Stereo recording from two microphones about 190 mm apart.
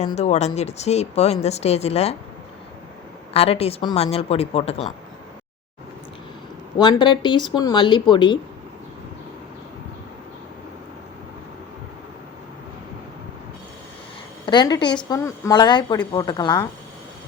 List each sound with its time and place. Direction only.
0.0 s speech: 35° left (ahead or behind)
3.3 s speech: 30° left (ahead or behind)
6.7 s a woman's voice: 25° left (ahead or behind)
14.4 s a woman's voice: 25° left (ahead or behind)